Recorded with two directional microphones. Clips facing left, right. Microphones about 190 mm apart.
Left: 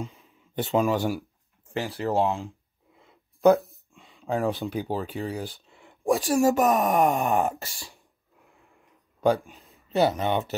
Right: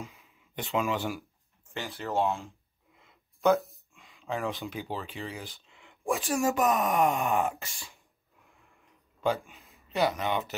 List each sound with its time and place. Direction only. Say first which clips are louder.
0.0 s speech: left 7 dB; 30° left (ahead or behind)
9.2 s speech: left 6 dB; 40° left (ahead or behind)
9.9 s speech: left 5 dB; 30° left (ahead or behind)